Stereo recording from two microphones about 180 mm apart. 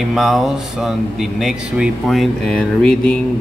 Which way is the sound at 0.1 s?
Centre (ahead or behind).